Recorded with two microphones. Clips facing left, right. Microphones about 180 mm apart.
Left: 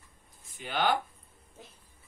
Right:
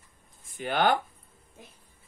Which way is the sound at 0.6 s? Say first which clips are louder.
Right 4 dB; 55° right (ahead or behind).